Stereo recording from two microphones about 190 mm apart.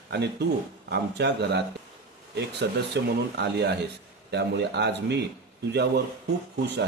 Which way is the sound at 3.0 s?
65° right (ahead or behind).